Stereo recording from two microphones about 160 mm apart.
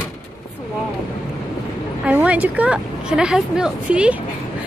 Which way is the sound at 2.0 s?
10° right (ahead or behind).